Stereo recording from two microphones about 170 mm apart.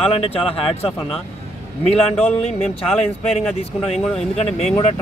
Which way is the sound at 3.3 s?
40° left (ahead or behind).